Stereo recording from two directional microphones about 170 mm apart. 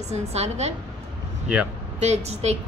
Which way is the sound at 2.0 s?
40° right (ahead or behind).